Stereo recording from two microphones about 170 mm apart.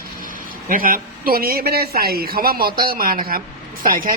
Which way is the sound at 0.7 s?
55° right (ahead or behind).